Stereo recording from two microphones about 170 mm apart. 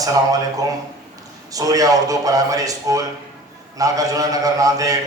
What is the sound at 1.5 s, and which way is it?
A man's voice, 20° right (ahead or behind).